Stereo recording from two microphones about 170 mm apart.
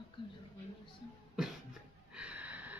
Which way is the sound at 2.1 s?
5° right (ahead or behind).